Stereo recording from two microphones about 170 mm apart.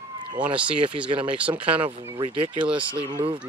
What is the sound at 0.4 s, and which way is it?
Mantra, 5° right (ahead or behind).